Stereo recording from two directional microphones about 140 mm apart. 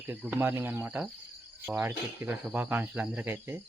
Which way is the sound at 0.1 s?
10° right (ahead or behind).